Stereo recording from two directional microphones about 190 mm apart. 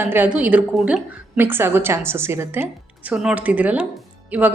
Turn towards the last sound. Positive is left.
turn(degrees=-10)  # may be behind; listen again after turning